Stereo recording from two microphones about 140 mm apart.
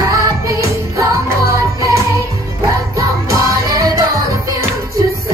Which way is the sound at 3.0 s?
20° right (ahead or behind).